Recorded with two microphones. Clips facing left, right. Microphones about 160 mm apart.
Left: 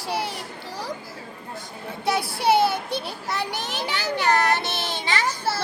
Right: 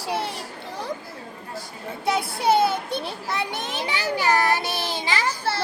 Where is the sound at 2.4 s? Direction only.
Centre (ahead or behind).